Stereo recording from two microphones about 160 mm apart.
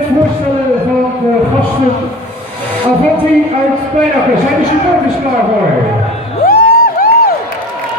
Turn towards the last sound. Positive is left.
turn(degrees=70)  # may be behind; listen again after turning